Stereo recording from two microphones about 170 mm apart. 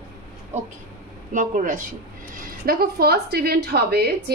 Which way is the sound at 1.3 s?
50° right (ahead or behind).